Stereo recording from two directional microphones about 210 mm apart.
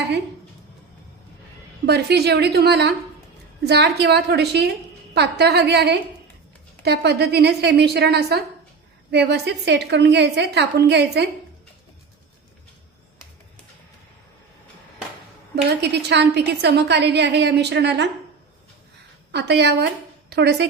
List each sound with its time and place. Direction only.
1.9 s a woman's voice: 50° right (ahead or behind)
15.8 s a woman's voice: 55° right (ahead or behind)
19.3 s a woman's voice: 55° right (ahead or behind)